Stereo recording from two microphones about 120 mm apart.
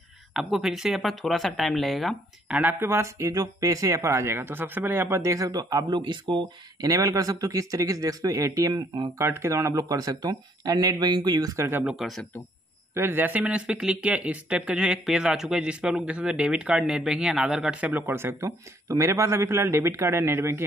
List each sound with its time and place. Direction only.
0.3 s speech: centre (ahead or behind)
2.5 s speech: 15° right (ahead or behind)
11.8 s speech: 5° right (ahead or behind)
12.9 s speech: 20° right (ahead or behind)
18.0 s speech: 20° right (ahead or behind)